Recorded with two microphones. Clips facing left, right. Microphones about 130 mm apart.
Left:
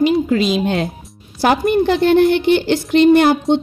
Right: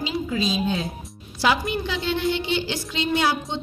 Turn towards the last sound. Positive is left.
turn(degrees=60)  # may be behind; listen again after turning